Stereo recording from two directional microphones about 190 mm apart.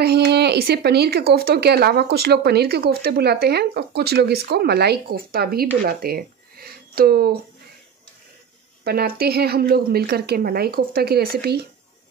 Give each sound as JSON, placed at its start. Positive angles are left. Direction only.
{"t": 0.0, "sound": "speech", "side_deg": -60}
{"t": 8.8, "sound": "speech", "side_deg": -55}